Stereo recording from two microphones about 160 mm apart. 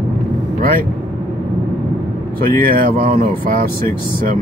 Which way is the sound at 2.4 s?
65° right (ahead or behind).